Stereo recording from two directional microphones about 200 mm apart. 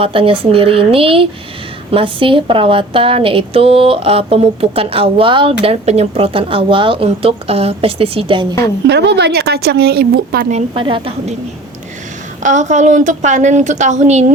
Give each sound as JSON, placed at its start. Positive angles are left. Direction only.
{"t": 0.0, "sound": "a woman's voice", "side_deg": -25}
{"t": 8.9, "sound": "speech", "side_deg": -55}
{"t": 10.5, "sound": "a woman's voice", "side_deg": -25}
{"t": 12.4, "sound": "a woman's voice", "side_deg": -35}